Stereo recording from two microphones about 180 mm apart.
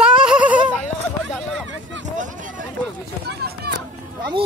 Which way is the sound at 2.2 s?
45° right (ahead or behind).